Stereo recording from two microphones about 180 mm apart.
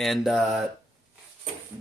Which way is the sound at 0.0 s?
Centre (ahead or behind).